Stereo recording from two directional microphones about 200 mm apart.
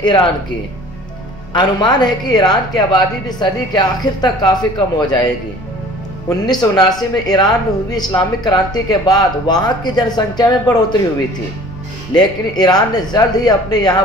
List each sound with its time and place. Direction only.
1.5 s speech: 20° left (ahead or behind)
12.2 s speech: 20° left (ahead or behind)